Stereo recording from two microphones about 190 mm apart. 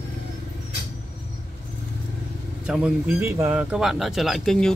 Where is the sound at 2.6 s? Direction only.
5° right (ahead or behind).